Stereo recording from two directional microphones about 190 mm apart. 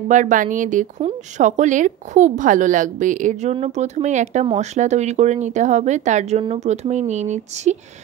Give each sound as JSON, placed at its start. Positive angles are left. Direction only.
{"t": 0.1, "sound": "speech", "side_deg": -40}